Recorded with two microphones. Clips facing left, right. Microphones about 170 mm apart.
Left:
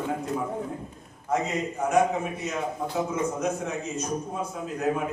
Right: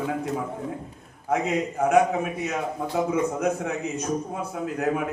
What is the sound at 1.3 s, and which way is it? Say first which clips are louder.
A man's voice: right 3 dB; 60° right (ahead or behind).